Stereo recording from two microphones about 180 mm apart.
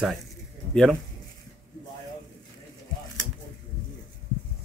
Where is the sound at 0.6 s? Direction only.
25° right (ahead or behind).